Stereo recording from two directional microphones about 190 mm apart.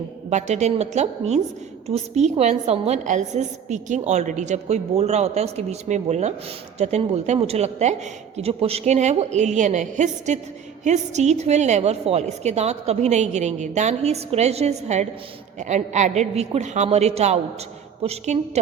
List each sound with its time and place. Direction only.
0.3 s a woman's voice: 35° right (ahead or behind)